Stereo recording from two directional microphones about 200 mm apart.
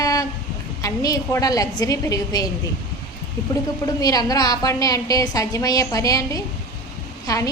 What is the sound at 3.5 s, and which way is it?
A woman's voice, 15° left (ahead or behind).